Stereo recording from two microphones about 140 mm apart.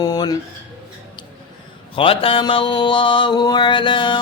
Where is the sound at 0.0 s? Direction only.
30° left (ahead or behind).